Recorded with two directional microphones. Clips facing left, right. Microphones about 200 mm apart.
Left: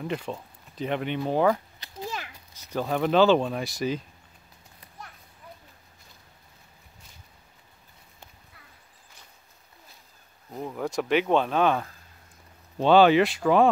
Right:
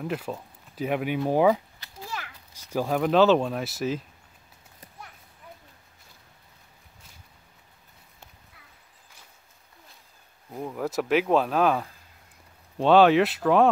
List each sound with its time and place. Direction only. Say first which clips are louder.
0.0 s speech: even; 5° right (ahead or behind)
1.8 s a sound: left 3 dB; 20° left (ahead or behind)
2.5 s speech: right 2 dB; 10° right (ahead or behind)
10.5 s speech: right 1 dB; centre (ahead or behind)